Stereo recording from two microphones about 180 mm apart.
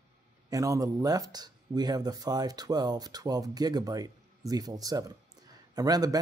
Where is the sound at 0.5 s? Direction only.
20° right (ahead or behind).